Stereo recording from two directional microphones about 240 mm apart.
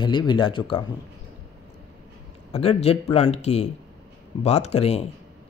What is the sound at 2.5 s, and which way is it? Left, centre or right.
Speech, left.